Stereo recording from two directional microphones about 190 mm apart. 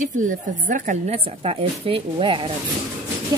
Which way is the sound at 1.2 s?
30° right (ahead or behind).